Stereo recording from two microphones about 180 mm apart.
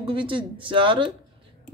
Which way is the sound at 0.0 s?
30° right (ahead or behind).